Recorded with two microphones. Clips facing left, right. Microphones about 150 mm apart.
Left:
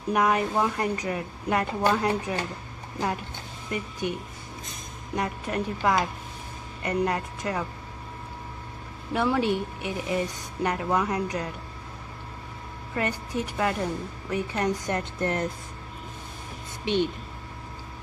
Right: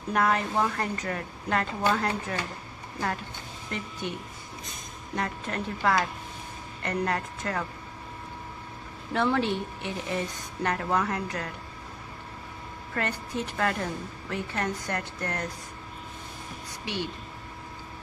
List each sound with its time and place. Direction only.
0.1 s a woman's voice: 15° left (ahead or behind)
3.7 s a woman's voice: 15° left (ahead or behind)
5.1 s a woman's voice: 15° left (ahead or behind)
9.1 s a woman's voice: 10° left (ahead or behind)
12.9 s a woman's voice: 15° left (ahead or behind)
16.8 s speech: 20° left (ahead or behind)